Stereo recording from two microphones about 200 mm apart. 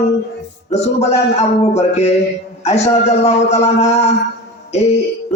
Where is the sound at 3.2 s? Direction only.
35° left (ahead or behind).